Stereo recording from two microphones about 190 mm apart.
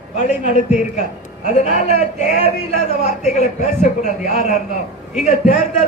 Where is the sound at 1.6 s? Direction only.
40° left (ahead or behind).